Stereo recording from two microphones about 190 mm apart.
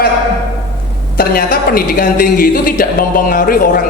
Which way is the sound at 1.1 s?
50° left (ahead or behind).